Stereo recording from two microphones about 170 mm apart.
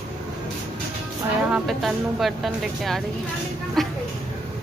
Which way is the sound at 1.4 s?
5° right (ahead or behind).